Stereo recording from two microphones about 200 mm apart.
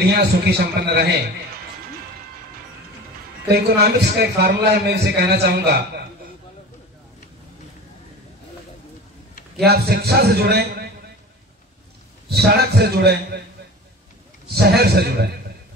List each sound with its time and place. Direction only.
0.1 s a man's voice: 55° right (ahead or behind)
3.4 s a man's voice: 55° right (ahead or behind)
9.7 s a man's voice: 50° right (ahead or behind)
12.4 s a man's voice: 55° right (ahead or behind)
14.5 s a man's voice: 50° right (ahead or behind)